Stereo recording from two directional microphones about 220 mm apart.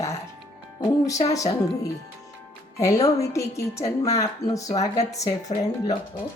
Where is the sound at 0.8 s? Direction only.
15° left (ahead or behind).